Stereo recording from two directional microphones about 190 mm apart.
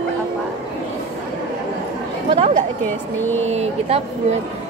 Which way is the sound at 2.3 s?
35° right (ahead or behind).